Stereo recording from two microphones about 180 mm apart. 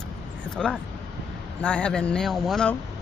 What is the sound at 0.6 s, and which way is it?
Speech, 5° left (ahead or behind).